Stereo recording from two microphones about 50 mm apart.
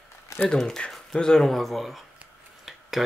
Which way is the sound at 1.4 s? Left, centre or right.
Centre.